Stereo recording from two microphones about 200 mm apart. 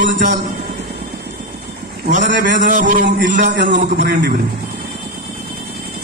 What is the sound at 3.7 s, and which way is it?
Speech, 45° right (ahead or behind).